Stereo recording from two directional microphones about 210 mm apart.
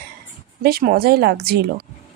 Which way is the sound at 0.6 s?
45° right (ahead or behind).